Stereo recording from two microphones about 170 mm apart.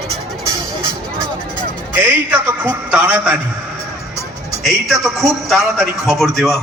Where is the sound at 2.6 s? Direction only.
10° right (ahead or behind).